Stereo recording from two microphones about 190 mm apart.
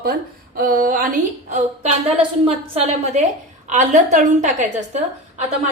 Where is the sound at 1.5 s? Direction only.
35° right (ahead or behind).